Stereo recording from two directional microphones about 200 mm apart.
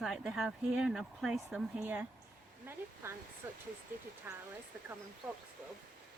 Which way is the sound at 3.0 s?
10° right (ahead or behind).